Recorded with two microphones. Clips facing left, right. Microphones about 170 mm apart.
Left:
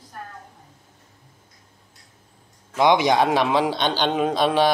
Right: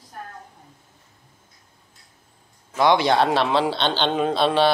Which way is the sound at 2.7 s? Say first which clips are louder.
Even; 15° left (ahead or behind).